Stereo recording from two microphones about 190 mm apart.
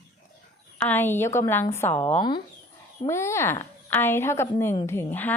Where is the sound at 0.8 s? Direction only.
10° left (ahead or behind).